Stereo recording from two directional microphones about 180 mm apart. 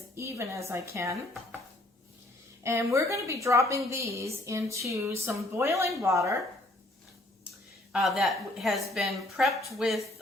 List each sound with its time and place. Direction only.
0.2 s a woman's voice: 15° right (ahead or behind)
2.6 s a woman's voice: 15° right (ahead or behind)
7.9 s a woman's voice: centre (ahead or behind)